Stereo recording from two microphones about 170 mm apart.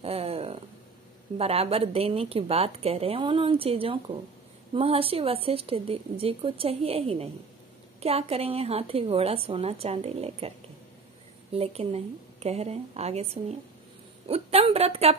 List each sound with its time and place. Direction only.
0.0 s a sound: 35° right (ahead or behind)
1.4 s a woman's voice: 35° right (ahead or behind)
11.5 s a woman's voice: 35° right (ahead or behind)